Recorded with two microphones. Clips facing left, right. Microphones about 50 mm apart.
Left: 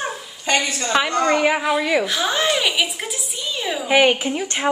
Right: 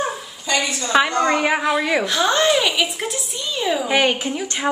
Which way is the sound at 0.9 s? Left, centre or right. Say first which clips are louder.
Right 1 dB; centre.